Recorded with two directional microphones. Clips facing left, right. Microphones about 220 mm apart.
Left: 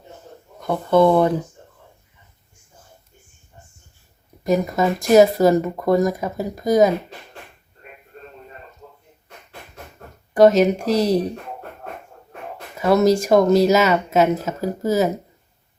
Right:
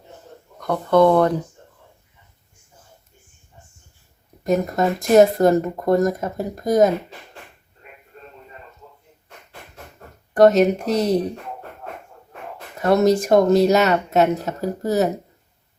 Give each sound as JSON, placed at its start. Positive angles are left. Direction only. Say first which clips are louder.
{"t": 0.6, "sound": "speech", "louder": "even", "side_deg": 5}
{"t": 4.8, "sound": "speech", "louder": "even", "side_deg": 0}
{"t": 10.3, "sound": "speech", "louder": "even", "side_deg": 0}
{"t": 12.8, "sound": "speech", "louder": "even", "side_deg": 0}